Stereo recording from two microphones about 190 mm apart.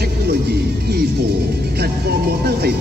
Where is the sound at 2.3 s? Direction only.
55° right (ahead or behind).